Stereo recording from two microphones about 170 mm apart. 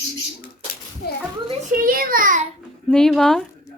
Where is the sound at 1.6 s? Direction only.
55° right (ahead or behind).